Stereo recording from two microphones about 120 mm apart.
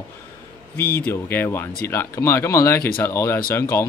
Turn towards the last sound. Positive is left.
turn(degrees=20)  # may be behind; listen again after turning